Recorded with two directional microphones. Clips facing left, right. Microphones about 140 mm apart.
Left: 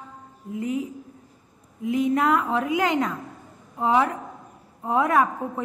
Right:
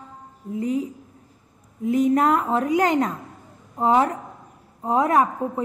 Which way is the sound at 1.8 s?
40° right (ahead or behind).